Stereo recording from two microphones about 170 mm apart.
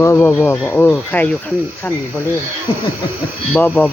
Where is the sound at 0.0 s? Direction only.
10° left (ahead or behind).